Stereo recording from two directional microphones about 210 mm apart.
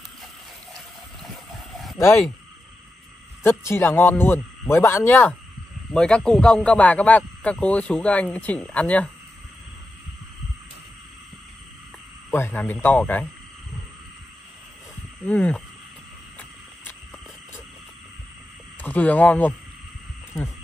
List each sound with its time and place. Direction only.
0.7 s boat: centre (ahead or behind)
3.4 s speech: 10° left (ahead or behind)
12.3 s speech: 10° left (ahead or behind)
15.2 s speech: 5° left (ahead or behind)
18.8 s speech: 10° left (ahead or behind)